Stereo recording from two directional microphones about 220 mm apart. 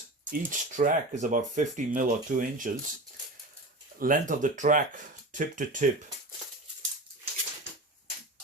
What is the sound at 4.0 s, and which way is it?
Speech, 35° right (ahead or behind).